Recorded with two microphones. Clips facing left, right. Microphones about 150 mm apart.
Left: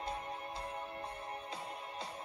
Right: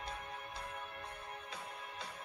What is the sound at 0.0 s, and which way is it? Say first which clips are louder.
Music: left 5 dB; 30° left (ahead or behind).